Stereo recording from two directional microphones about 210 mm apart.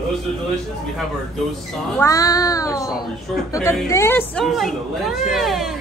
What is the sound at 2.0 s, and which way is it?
Child singing, 15° left (ahead or behind).